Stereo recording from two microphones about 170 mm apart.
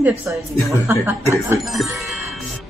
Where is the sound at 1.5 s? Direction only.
Centre (ahead or behind).